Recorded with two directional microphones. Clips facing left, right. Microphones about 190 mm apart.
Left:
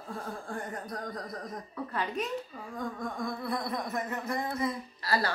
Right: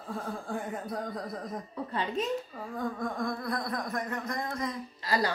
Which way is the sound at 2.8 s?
Centre (ahead or behind).